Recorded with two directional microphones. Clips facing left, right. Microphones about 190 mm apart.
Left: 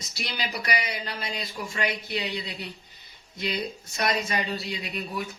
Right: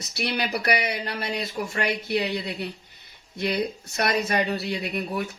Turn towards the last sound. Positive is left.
turn(degrees=-60)  # may be behind; listen again after turning